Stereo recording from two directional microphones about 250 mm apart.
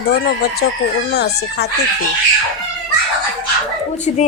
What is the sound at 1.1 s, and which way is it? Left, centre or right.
Speech, left.